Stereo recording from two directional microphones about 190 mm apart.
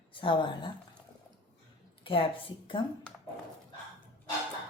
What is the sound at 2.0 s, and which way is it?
Speech, 25° left (ahead or behind).